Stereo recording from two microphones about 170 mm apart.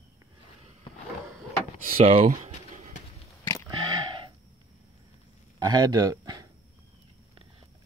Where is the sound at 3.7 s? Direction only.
25° right (ahead or behind).